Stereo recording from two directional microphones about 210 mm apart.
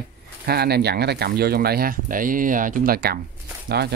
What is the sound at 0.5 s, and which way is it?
Speech, 50° right (ahead or behind).